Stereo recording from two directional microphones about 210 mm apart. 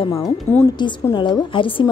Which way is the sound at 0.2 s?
10° left (ahead or behind).